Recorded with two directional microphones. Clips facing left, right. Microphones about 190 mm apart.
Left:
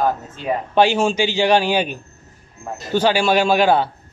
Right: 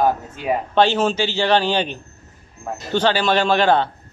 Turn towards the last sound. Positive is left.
turn(degrees=10)  # may be behind; listen again after turning